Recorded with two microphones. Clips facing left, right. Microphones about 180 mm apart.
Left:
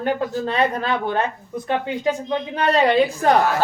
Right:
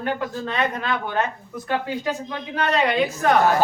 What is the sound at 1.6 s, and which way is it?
Speech, 25° left (ahead or behind).